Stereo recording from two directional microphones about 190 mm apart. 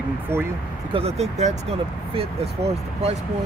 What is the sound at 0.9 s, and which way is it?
Speech, 35° right (ahead or behind).